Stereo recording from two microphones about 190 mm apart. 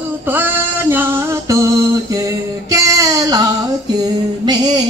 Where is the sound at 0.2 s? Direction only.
10° right (ahead or behind).